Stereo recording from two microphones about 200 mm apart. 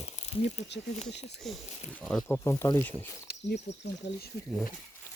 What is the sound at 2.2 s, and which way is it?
Speech, 15° left (ahead or behind).